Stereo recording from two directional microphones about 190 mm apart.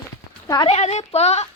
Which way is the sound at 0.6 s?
35° left (ahead or behind).